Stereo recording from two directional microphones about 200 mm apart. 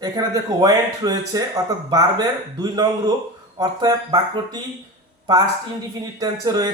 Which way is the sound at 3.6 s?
20° right (ahead or behind).